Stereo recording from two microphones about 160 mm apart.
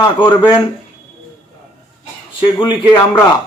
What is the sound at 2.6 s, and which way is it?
Speech, 30° left (ahead or behind).